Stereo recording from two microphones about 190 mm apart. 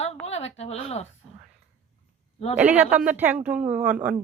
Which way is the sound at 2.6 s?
5° right (ahead or behind).